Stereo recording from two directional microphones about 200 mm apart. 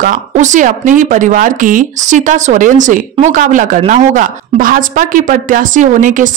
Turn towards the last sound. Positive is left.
turn(degrees=-40)  # may be behind; listen again after turning